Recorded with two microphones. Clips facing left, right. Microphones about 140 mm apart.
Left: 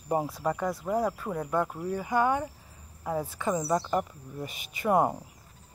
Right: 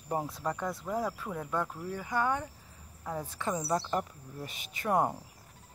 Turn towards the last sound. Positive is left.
turn(degrees=5)  # may be behind; listen again after turning